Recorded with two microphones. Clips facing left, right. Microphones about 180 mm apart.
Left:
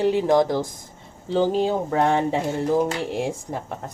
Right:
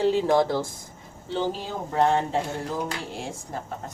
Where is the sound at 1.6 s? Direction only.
65° left (ahead or behind).